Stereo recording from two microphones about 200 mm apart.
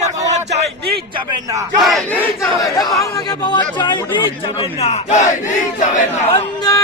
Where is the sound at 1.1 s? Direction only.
20° right (ahead or behind).